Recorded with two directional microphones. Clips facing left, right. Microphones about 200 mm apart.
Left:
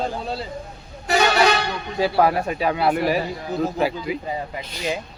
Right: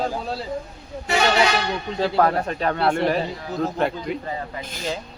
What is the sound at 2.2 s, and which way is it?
A man's voice, 10° left (ahead or behind).